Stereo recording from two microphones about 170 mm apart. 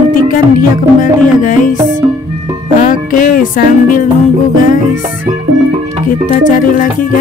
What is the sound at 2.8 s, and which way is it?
Music, 50° left (ahead or behind).